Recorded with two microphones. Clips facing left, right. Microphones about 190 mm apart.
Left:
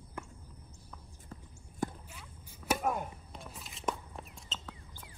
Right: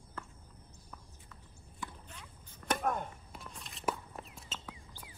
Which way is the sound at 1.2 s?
40° left (ahead or behind).